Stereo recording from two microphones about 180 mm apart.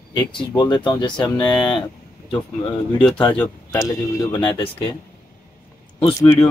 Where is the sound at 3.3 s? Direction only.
10° left (ahead or behind).